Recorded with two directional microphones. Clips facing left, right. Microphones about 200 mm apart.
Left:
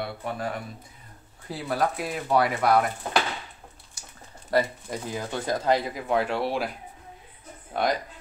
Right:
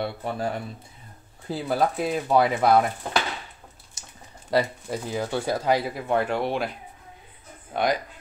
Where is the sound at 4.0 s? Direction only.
20° right (ahead or behind).